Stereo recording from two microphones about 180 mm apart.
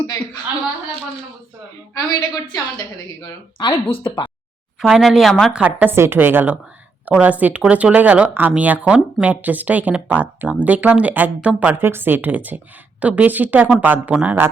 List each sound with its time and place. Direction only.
2.0 s speech: 20° left (ahead or behind)
4.8 s speech: centre (ahead or behind)